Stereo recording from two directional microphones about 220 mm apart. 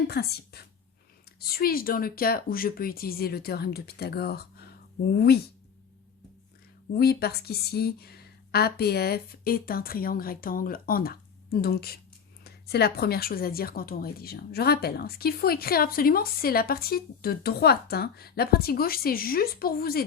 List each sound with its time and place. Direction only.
0.1 s speech: 45° left (ahead or behind)
6.9 s speech: 45° left (ahead or behind)